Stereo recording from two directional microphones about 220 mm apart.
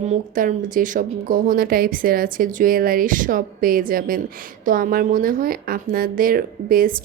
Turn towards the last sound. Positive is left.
turn(degrees=-40)  # may be behind; listen again after turning